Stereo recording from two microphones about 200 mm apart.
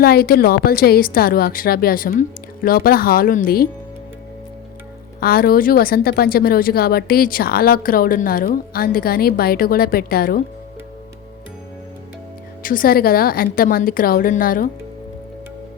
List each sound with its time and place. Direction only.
0.0 s a woman's voice: 50° left (ahead or behind)
5.2 s a woman's voice: 50° left (ahead or behind)
12.6 s a woman's voice: 45° left (ahead or behind)